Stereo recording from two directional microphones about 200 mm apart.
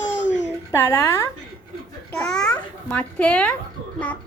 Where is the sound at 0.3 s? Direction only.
35° left (ahead or behind).